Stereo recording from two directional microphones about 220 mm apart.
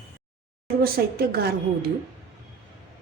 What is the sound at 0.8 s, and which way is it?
Speech, 45° right (ahead or behind).